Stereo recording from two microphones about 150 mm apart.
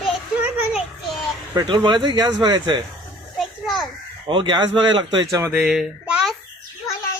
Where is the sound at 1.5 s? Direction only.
30° right (ahead or behind).